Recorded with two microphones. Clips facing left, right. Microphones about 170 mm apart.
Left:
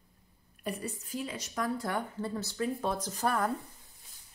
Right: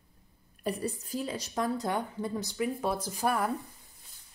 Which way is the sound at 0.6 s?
35° right (ahead or behind).